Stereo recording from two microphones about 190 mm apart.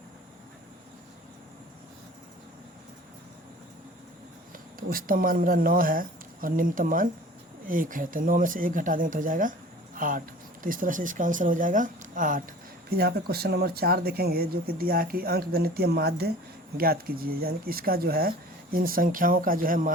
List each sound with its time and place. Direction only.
4.8 s speech: 50° right (ahead or behind)
12.9 s speech: 55° right (ahead or behind)